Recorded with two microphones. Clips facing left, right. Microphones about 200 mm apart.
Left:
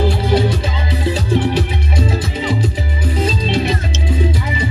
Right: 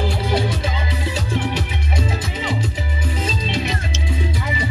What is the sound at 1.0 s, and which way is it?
Music, 35° left (ahead or behind).